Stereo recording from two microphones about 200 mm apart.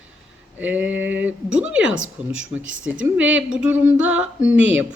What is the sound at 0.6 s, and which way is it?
Speech, 10° right (ahead or behind).